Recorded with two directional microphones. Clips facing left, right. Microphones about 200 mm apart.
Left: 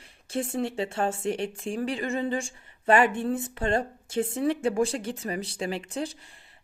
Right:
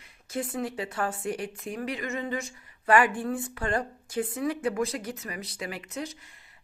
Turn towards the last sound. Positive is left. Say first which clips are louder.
# left 5 dB
turn(degrees=30)  # may be behind; listen again after turning